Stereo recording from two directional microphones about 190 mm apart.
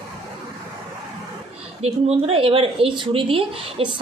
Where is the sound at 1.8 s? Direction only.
30° right (ahead or behind).